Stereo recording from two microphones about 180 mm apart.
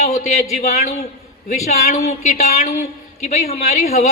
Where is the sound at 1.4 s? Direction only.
40° left (ahead or behind).